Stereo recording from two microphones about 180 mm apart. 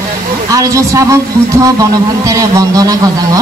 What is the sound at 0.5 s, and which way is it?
A woman's voice, 20° right (ahead or behind).